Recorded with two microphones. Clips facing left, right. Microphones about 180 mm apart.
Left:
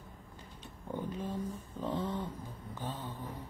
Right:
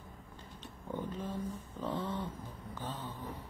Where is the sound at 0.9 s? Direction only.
10° left (ahead or behind).